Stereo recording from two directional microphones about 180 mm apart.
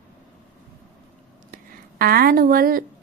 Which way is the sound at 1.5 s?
55° right (ahead or behind).